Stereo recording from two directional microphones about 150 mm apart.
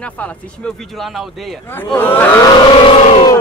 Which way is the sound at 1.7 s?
15° left (ahead or behind).